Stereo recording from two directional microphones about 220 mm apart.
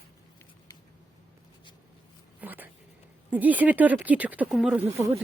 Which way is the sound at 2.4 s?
10° right (ahead or behind).